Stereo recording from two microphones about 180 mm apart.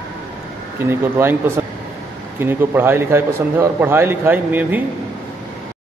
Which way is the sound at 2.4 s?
15° right (ahead or behind).